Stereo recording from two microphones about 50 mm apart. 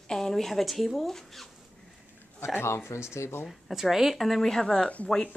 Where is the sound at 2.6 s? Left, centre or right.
Left.